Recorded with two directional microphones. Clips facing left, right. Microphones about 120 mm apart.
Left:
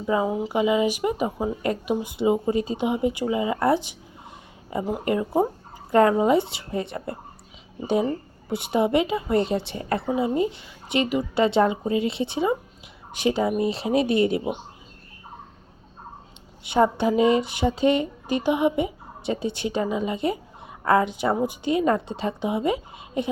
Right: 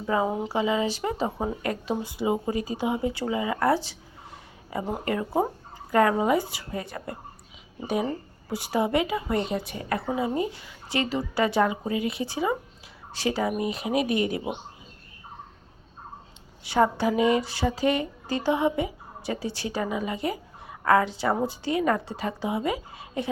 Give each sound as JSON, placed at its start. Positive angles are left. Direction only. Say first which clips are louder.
{"t": 0.3, "sound": "speech", "louder": "left 2 dB", "side_deg": 0}
{"t": 0.5, "sound": "speech", "louder": "left 6 dB", "side_deg": 15}
{"t": 8.4, "sound": "a woman's voice", "louder": "left 3 dB", "side_deg": 25}
{"t": 16.6, "sound": "speech", "louder": "left 2 dB", "side_deg": 20}